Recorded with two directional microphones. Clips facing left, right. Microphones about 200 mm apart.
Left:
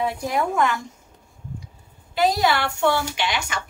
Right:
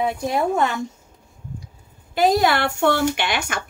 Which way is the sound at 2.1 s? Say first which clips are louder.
Right 3 dB; 50° right (ahead or behind).